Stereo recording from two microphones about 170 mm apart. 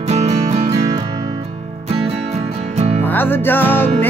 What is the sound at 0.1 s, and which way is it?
Music, 40° right (ahead or behind).